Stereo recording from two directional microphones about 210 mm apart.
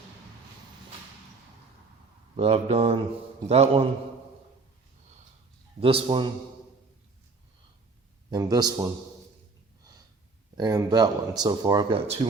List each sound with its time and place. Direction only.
2.3 s speech: 30° right (ahead or behind)
5.8 s speech: 25° right (ahead or behind)
8.3 s a man's voice: 20° right (ahead or behind)
10.6 s speech: 20° right (ahead or behind)